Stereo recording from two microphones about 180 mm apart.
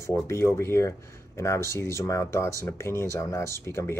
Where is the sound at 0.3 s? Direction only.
15° left (ahead or behind).